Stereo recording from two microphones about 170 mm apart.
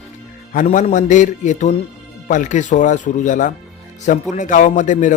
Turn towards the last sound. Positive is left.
turn(degrees=50)  # may be behind; listen again after turning